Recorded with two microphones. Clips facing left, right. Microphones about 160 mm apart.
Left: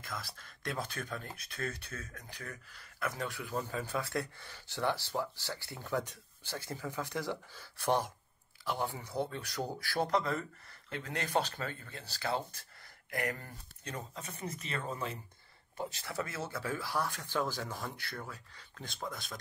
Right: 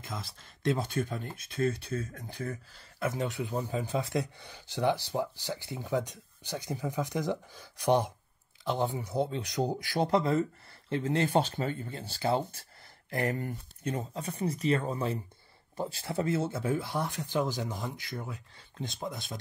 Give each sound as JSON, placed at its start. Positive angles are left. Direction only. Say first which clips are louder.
{"t": 0.0, "sound": "speech", "louder": "right 3 dB", "side_deg": -25}